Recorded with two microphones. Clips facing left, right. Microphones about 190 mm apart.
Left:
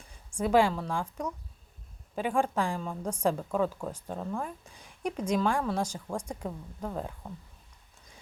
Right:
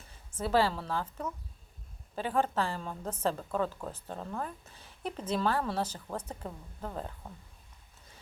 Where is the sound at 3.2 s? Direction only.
10° left (ahead or behind).